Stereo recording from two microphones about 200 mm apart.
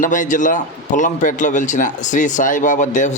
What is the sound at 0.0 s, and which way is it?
A man's voice, 40° left (ahead or behind).